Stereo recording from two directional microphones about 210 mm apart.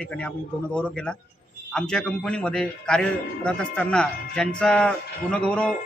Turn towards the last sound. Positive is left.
turn(degrees=5)  # may be behind; listen again after turning